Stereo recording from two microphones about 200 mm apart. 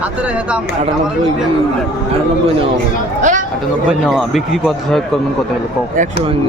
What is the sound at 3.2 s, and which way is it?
Chatter, 40° right (ahead or behind).